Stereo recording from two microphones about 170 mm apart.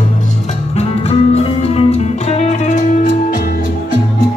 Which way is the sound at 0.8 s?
40° left (ahead or behind).